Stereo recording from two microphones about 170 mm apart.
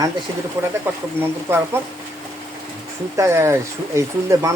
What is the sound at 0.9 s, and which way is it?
Speech, 10° right (ahead or behind).